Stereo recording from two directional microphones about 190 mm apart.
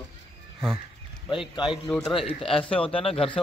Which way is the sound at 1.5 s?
25° left (ahead or behind).